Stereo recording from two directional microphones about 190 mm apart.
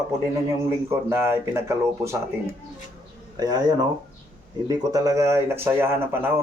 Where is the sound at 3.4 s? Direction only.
20° right (ahead or behind).